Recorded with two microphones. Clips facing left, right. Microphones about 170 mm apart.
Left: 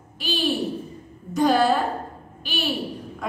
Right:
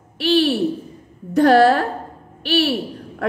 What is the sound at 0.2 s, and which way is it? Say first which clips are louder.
A woman's voice: right 8 dB; 65° right (ahead or behind).